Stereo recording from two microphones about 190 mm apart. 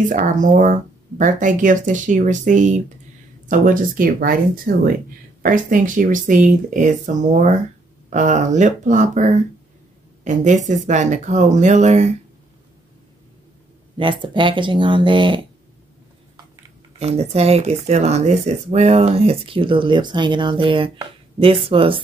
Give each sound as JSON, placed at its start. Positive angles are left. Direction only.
{"t": 0.1, "sound": "speech", "side_deg": -45}
{"t": 13.9, "sound": "speech", "side_deg": -25}
{"t": 17.0, "sound": "speech", "side_deg": -35}